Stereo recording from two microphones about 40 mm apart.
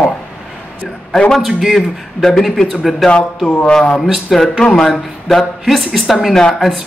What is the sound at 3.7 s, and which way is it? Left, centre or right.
Speech, centre.